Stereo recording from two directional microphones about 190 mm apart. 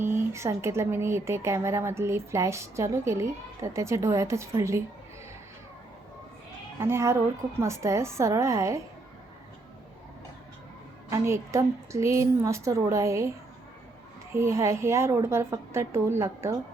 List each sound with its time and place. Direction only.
0.0 s a woman's voice: 15° right (ahead or behind)
6.7 s a woman's voice: 15° right (ahead or behind)
11.1 s a woman's voice: 15° right (ahead or behind)
14.3 s a woman's voice: 15° right (ahead or behind)